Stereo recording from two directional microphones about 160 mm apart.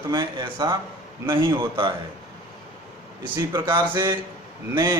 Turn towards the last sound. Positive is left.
turn(degrees=-25)  # may be behind; listen again after turning